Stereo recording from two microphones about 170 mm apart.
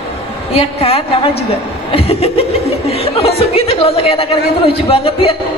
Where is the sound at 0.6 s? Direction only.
35° left (ahead or behind).